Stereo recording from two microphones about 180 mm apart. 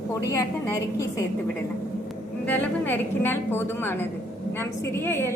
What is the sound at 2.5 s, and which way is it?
A woman's voice, 10° left (ahead or behind).